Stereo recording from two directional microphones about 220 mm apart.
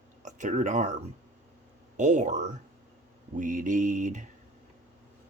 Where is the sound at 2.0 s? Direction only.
35° right (ahead or behind).